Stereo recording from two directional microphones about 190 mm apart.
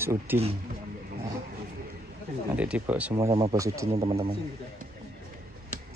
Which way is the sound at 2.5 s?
5° right (ahead or behind).